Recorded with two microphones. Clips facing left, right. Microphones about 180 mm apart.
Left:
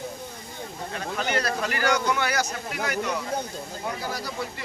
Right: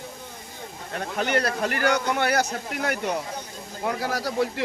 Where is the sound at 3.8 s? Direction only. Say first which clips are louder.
Right 6 dB; 90° right.